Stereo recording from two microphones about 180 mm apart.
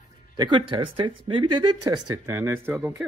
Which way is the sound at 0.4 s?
30° right (ahead or behind).